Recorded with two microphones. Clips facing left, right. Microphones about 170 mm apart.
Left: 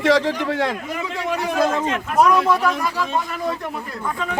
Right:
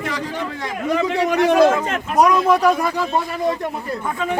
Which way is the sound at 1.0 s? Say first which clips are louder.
Right 7 dB; 75° right (ahead or behind).